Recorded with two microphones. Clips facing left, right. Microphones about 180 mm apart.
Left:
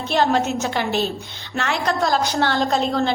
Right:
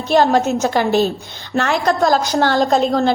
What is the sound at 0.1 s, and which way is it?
A woman's voice, 40° right (ahead or behind).